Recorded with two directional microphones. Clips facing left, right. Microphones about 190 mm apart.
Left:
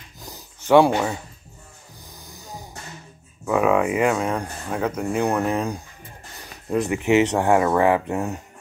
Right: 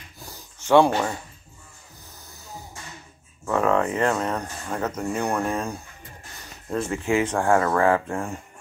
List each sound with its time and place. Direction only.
0.3 s a sound: 15° left (ahead or behind)
2.1 s snort: 15° left (ahead or behind)
3.4 s speech: 10° left (ahead or behind)